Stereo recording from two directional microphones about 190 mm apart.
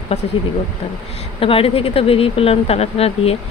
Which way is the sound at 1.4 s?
30° left (ahead or behind).